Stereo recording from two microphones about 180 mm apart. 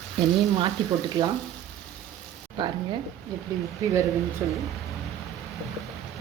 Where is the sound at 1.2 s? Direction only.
25° right (ahead or behind).